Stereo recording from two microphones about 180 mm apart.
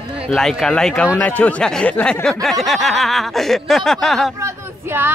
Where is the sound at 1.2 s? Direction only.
10° left (ahead or behind).